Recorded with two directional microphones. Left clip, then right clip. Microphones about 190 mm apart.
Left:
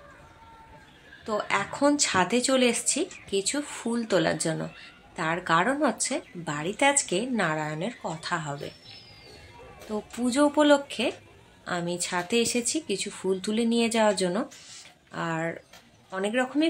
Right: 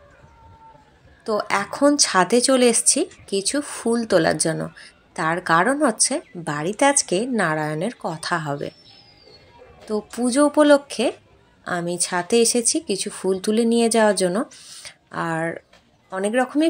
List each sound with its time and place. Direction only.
1.2 s speech: 25° right (ahead or behind)
9.8 s speech: 25° right (ahead or behind)